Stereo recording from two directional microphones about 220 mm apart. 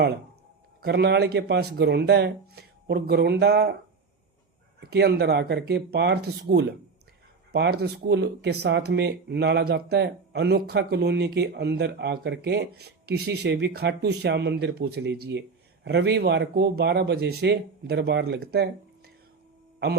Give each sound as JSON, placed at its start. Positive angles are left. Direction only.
{"t": 0.8, "sound": "speech", "side_deg": -45}
{"t": 4.8, "sound": "speech", "side_deg": -50}